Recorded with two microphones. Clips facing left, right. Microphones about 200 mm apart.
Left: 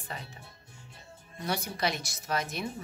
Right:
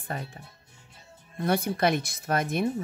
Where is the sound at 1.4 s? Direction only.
55° right (ahead or behind).